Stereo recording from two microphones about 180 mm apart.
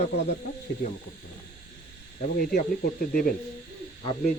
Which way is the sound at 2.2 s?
55° left (ahead or behind).